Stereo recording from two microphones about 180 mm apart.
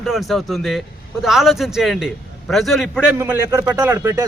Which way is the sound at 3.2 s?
15° right (ahead or behind).